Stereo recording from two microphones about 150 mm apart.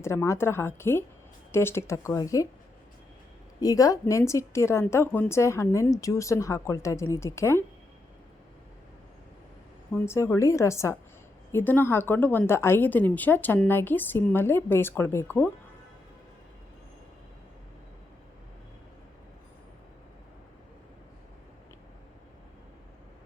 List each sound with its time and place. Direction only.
0.0 s a woman's voice: 20° left (ahead or behind)
3.6 s a woman's voice: 25° left (ahead or behind)
9.9 s a woman's voice: 15° left (ahead or behind)